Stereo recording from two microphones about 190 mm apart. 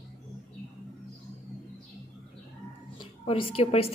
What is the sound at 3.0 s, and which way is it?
Speech, 30° left (ahead or behind).